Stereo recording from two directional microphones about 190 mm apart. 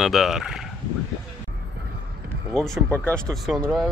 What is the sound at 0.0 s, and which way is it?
Speech, centre (ahead or behind).